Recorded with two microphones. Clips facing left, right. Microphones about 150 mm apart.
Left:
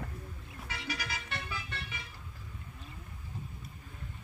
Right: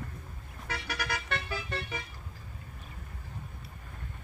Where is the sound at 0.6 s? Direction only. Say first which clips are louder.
Right 4 dB; 60° right (ahead or behind).